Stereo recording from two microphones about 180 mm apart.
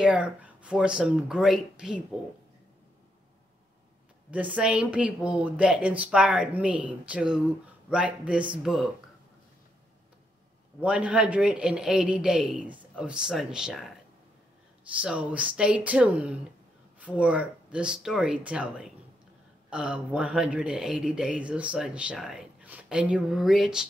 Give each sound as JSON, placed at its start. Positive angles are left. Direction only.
{"t": 0.0, "sound": "speech", "side_deg": -5}
{"t": 4.3, "sound": "speech", "side_deg": -10}
{"t": 10.8, "sound": "speech", "side_deg": -10}
{"t": 15.0, "sound": "speech", "side_deg": -5}